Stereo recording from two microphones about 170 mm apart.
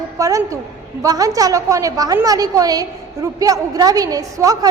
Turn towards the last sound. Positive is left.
turn(degrees=-20)  # may be behind; listen again after turning